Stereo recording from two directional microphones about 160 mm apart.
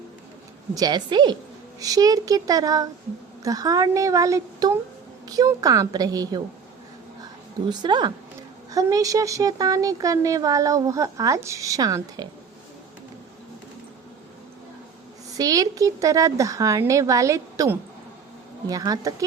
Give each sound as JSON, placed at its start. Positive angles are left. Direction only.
{"t": 0.7, "sound": "speech", "side_deg": -25}
{"t": 7.7, "sound": "speech", "side_deg": -25}
{"t": 15.4, "sound": "speech", "side_deg": -20}